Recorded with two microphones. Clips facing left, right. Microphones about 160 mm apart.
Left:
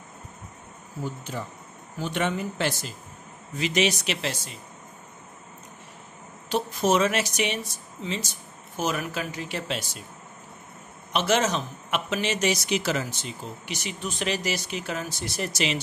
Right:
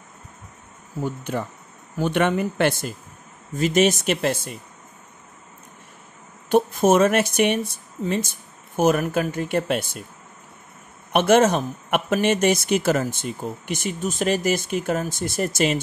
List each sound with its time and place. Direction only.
1.0 s speech: 60° right (ahead or behind)
6.5 s speech: 50° right (ahead or behind)
11.1 s speech: 55° right (ahead or behind)